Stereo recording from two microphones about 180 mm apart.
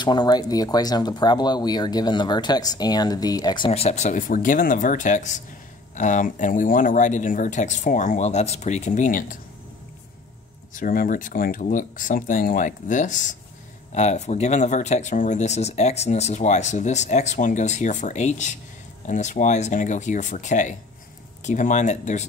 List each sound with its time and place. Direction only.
0.0 s speech: 25° left (ahead or behind); by 9.4 s 45° left (ahead or behind)
10.7 s speech: 50° left (ahead or behind)